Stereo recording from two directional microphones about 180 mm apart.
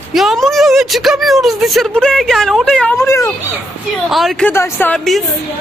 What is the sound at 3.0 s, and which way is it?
Speech, 15° left (ahead or behind).